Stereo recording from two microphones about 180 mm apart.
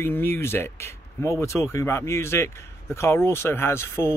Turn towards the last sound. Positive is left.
turn(degrees=15)  # may be behind; listen again after turning